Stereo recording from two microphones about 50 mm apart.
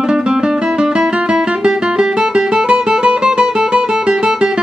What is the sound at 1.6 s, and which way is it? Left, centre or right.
Music, centre.